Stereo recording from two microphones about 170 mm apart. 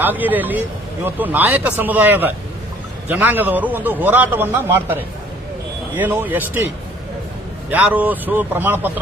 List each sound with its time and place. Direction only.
0.0 s a man's voice: 10° right (ahead or behind)
7.7 s a man's voice: 10° right (ahead or behind)